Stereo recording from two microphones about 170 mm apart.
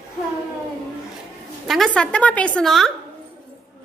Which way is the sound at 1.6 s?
Centre (ahead or behind).